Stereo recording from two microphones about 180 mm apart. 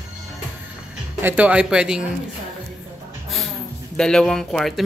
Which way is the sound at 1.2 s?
10° right (ahead or behind).